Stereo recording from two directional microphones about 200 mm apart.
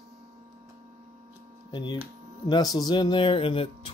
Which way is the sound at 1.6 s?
20° left (ahead or behind).